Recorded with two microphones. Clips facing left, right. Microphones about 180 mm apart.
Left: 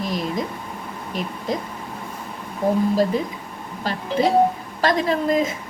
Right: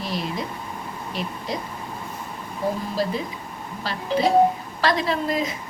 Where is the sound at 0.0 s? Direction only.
45° left (ahead or behind).